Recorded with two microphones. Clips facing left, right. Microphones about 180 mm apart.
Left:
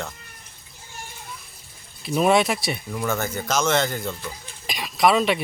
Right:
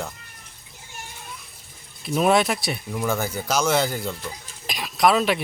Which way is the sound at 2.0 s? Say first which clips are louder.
Even; centre (ahead or behind).